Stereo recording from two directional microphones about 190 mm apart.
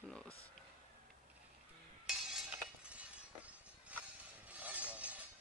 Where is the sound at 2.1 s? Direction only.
5° right (ahead or behind).